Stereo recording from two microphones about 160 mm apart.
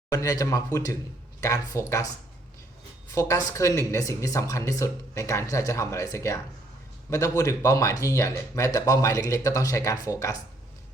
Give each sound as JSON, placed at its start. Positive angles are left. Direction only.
{"t": 0.1, "sound": "speech", "side_deg": 20}
{"t": 3.1, "sound": "speech", "side_deg": 20}